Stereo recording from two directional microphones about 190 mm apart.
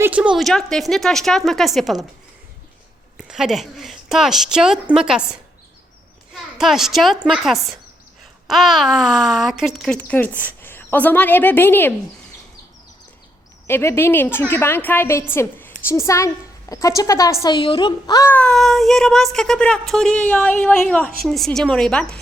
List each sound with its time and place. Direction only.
0.0 s a woman's voice: 5° right (ahead or behind)
3.2 s a woman's voice: 5° right (ahead or behind)
13.7 s a child's voice: 15° left (ahead or behind)